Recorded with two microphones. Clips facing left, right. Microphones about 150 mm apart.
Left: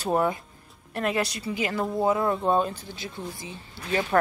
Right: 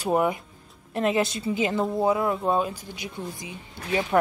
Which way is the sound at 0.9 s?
25° right (ahead or behind).